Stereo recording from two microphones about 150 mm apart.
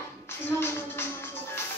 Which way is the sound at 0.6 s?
15° left (ahead or behind).